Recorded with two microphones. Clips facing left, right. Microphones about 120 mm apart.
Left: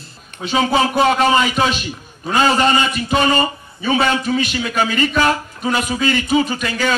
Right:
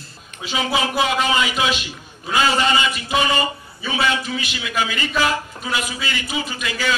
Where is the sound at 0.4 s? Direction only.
50° left (ahead or behind).